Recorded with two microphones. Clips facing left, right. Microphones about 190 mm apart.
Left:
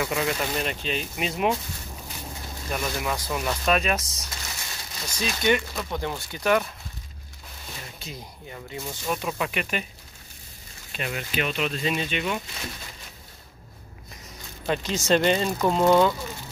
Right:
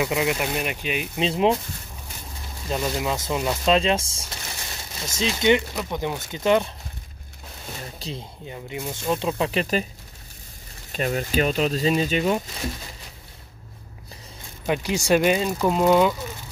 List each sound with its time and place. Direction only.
0.0 s speech: 15° right (ahead or behind)
1.1 s speech: 25° right (ahead or behind)
2.7 s speech: 20° right (ahead or behind)
7.8 s a sound: 35° right (ahead or behind)
8.2 s speech: 20° right (ahead or behind)
10.9 s speech: 40° right (ahead or behind)
14.7 s speech: 15° right (ahead or behind)